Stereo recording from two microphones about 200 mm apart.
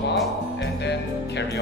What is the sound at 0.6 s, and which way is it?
Music, 60° left (ahead or behind).